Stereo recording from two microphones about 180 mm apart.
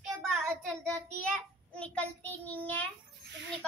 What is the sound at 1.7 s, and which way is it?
A child's voice, 5° left (ahead or behind).